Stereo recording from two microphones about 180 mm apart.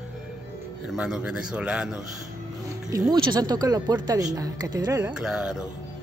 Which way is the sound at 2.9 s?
20° right (ahead or behind).